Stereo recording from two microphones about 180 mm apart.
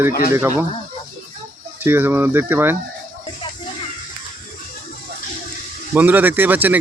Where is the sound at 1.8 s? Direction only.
10° right (ahead or behind).